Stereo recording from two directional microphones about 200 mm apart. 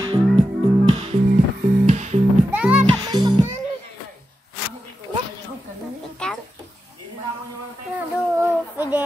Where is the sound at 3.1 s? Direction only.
20° right (ahead or behind).